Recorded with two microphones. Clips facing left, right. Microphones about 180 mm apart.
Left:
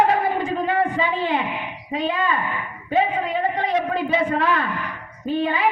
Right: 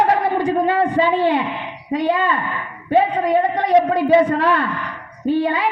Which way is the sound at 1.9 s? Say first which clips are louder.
Right 5 dB; 70° right (ahead or behind).